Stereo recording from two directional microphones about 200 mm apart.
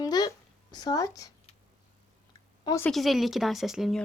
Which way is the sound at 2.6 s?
15° left (ahead or behind).